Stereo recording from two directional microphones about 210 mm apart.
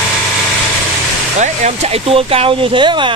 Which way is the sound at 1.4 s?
30° right (ahead or behind).